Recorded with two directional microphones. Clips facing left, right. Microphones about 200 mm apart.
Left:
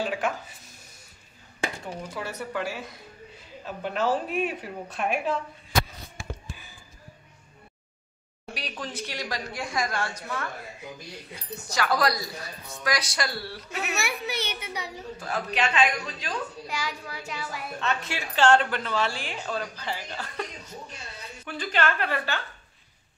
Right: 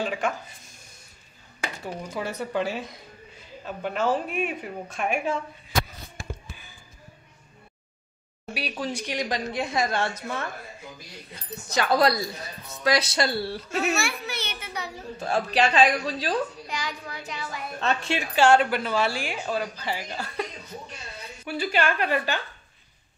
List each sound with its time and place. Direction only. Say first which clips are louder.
0.0 s speech: right 1 dB; 5° left (ahead or behind)
2.1 s a woman's voice: right 5 dB; 20° right (ahead or behind)
3.6 s speech: right 1 dB; centre (ahead or behind)
8.5 s a woman's voice: right 5 dB; 10° right (ahead or behind); by 10.1 s 25° right (ahead or behind)
11.7 s a woman's voice: right 4 dB; 25° right (ahead or behind)
13.7 s a child's voice: right 3 dB; 15° left (ahead or behind)
15.1 s a woman's voice: right 6 dB; 30° right (ahead or behind)
16.6 s speech: even; 5° left (ahead or behind)
17.7 s a woman's voice: right 4 dB; 30° right (ahead or behind)
18.3 s a woman's voice: right 2 dB; 10° right (ahead or behind)
21.5 s a woman's voice: right 2 dB; 10° right (ahead or behind)